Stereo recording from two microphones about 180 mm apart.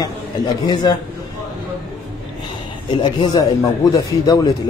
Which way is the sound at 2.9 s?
30° left (ahead or behind).